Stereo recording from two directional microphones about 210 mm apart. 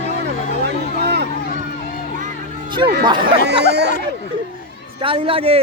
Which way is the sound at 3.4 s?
50° right (ahead or behind).